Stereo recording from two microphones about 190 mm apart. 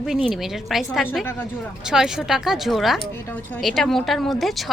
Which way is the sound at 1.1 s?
10° left (ahead or behind).